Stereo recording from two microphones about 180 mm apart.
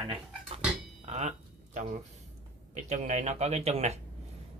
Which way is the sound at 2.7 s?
40° right (ahead or behind).